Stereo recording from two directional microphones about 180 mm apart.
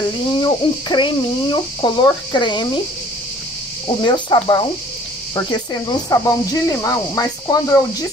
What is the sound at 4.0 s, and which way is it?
Speech, 25° left (ahead or behind).